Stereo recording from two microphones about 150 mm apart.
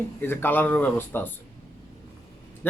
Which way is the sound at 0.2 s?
15° left (ahead or behind).